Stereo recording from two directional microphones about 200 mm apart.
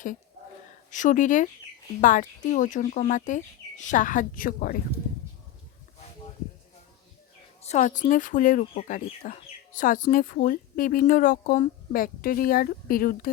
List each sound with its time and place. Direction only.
0.9 s speech: 40° left (ahead or behind)
7.6 s speech: 35° left (ahead or behind)